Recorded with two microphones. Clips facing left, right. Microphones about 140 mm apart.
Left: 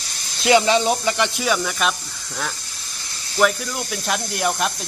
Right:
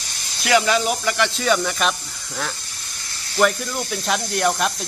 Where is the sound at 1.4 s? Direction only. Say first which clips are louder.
Right 1 dB; centre (ahead or behind).